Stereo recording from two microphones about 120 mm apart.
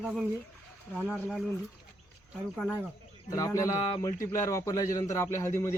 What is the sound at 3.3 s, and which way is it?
Speech, 25° left (ahead or behind).